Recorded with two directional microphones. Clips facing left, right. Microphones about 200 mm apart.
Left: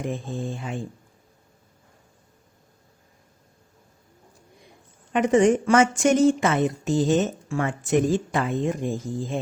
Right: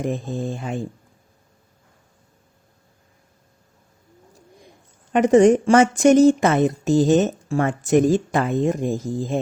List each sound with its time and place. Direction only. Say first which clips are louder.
0.0 s speech: right 4 dB; 40° right (ahead or behind)
5.1 s speech: right 5 dB; 40° right (ahead or behind)